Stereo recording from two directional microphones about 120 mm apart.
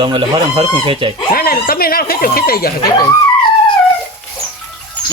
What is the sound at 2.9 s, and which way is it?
Speech, 30° left (ahead or behind).